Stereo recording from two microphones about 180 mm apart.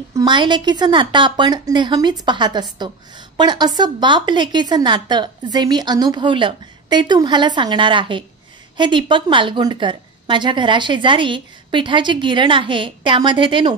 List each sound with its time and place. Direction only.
0.1 s a woman's voice: 25° right (ahead or behind)